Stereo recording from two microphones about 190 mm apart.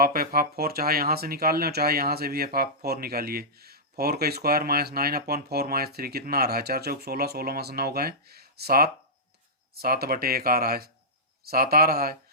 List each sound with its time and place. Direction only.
0.0 s speech: 50° right (ahead or behind)